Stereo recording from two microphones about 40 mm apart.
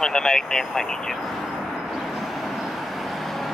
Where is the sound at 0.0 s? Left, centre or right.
Centre.